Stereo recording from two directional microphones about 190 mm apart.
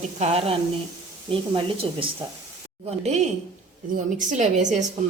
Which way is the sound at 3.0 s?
35° right (ahead or behind).